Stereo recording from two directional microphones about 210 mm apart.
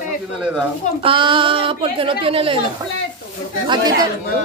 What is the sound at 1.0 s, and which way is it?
A woman's voice, 25° right (ahead or behind).